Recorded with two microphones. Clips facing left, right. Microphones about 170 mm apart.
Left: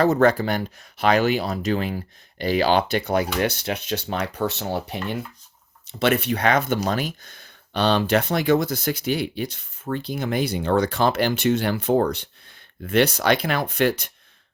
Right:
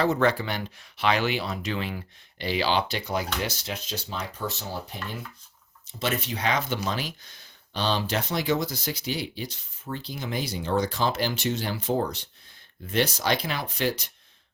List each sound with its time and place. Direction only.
0.0 s speech: 45° left (ahead or behind)